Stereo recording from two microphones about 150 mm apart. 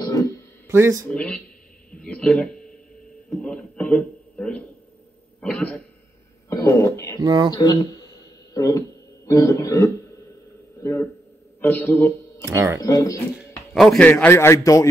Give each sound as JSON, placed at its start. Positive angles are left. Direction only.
{"t": 0.0, "sound": "a sound", "side_deg": 25}
{"t": 0.7, "sound": "speech", "side_deg": -20}
{"t": 1.0, "sound": "speech", "side_deg": 10}
{"t": 1.9, "sound": "a sound", "side_deg": 5}
{"t": 3.3, "sound": "a man's voice", "side_deg": 5}
{"t": 6.5, "sound": "a man's voice", "side_deg": 20}
{"t": 7.2, "sound": "speech", "side_deg": -30}
{"t": 7.5, "sound": "a man's voice", "side_deg": 25}
{"t": 12.4, "sound": "speech", "side_deg": -20}
{"t": 12.8, "sound": "speech", "side_deg": 20}
{"t": 13.7, "sound": "a man's voice", "side_deg": 0}
{"t": 14.0, "sound": "a man's voice", "side_deg": 15}